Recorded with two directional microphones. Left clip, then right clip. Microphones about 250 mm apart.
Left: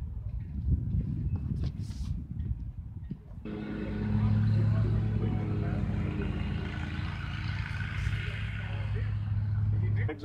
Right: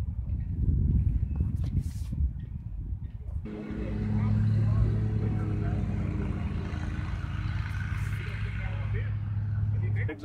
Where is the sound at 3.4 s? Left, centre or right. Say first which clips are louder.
Even; left.